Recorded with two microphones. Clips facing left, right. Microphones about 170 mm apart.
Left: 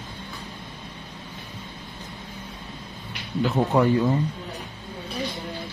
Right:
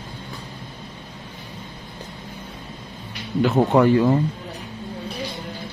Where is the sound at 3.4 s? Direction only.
65° right (ahead or behind).